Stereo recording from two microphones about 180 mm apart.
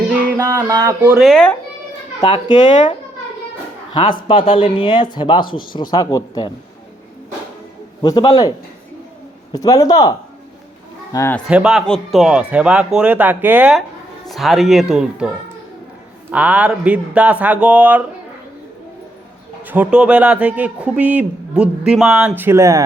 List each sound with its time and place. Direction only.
0.3 s a man's voice: 15° right (ahead or behind)
1.2 s speech: 5° left (ahead or behind)
2.2 s speech: 25° left (ahead or behind)
4.3 s speech: 30° left (ahead or behind)
8.0 s speech: 20° left (ahead or behind)
11.4 s speech: 5° right (ahead or behind)
16.3 s a man's voice: 5° right (ahead or behind)
19.6 s a man's voice: 10° right (ahead or behind)